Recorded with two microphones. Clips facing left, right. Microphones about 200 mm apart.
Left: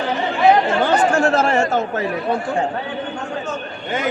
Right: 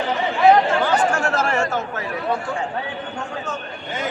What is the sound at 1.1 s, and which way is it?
Chatter, 25° left (ahead or behind).